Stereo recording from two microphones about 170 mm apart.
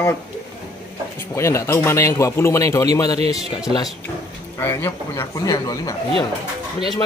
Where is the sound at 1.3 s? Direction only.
15° left (ahead or behind).